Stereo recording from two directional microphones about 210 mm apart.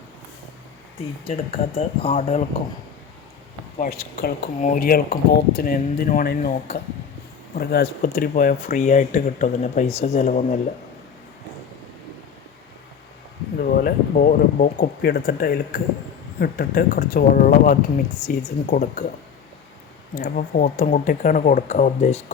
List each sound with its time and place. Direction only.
1.2 s speech: 25° left (ahead or behind)
3.8 s speech: 45° left (ahead or behind)
7.6 s speech: 45° left (ahead or behind)
13.6 s speech: 45° left (ahead or behind)
20.1 s speech: 40° left (ahead or behind)